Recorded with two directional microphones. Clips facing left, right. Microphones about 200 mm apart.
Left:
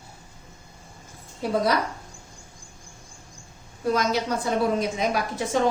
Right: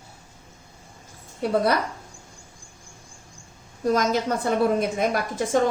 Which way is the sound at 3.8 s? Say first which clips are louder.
Right 2 dB; 45° right (ahead or behind).